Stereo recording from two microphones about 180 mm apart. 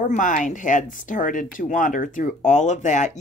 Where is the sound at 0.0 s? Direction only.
45° left (ahead or behind).